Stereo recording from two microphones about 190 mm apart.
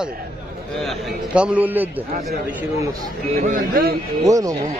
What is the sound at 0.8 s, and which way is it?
A man's voice, 5° right (ahead or behind).